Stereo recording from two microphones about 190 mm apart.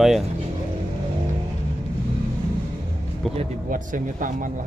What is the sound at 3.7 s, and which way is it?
Speech, 45° right (ahead or behind).